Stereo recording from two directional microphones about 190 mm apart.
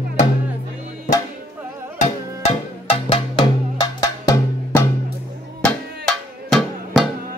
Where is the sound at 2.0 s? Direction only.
35° left (ahead or behind).